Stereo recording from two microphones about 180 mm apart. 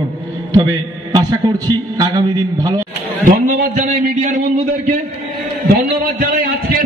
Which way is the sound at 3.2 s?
50° right (ahead or behind).